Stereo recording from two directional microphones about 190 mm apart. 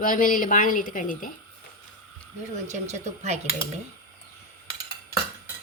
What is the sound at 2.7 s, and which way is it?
Speech, 35° right (ahead or behind).